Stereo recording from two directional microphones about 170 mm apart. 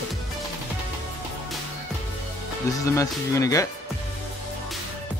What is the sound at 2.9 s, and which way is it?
Speech, 20° left (ahead or behind).